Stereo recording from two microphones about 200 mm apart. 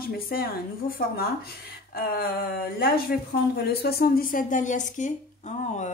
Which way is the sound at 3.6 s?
50° left (ahead or behind).